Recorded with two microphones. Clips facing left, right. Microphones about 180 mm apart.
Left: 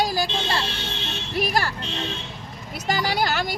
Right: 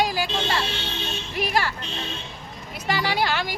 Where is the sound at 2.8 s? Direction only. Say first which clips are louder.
Even; 40° left (ahead or behind).